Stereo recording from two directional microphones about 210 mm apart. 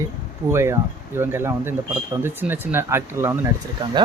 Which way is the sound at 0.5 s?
10° right (ahead or behind).